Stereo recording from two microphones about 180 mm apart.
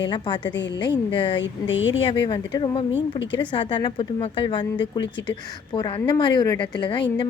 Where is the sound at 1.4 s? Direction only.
90° left.